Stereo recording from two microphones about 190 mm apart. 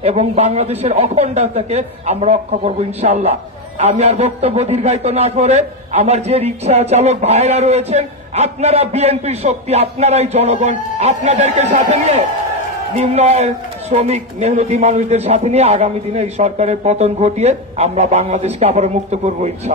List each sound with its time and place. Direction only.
0.0 s a man's voice: 35° right (ahead or behind)